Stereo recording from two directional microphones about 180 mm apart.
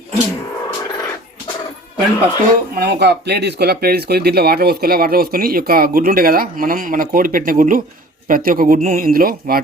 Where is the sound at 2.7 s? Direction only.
65° right (ahead or behind).